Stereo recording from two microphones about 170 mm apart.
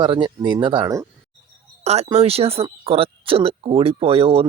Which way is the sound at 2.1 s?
35° right (ahead or behind).